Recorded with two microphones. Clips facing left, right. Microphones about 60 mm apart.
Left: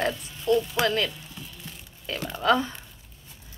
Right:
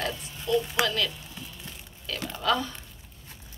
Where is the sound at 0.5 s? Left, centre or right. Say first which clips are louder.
Left 3 dB; left.